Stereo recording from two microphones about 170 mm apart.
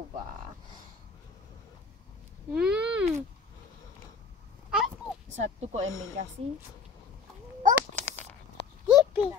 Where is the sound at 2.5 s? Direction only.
5° right (ahead or behind).